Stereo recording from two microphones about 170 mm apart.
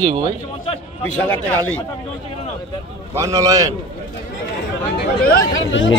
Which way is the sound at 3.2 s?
20° right (ahead or behind).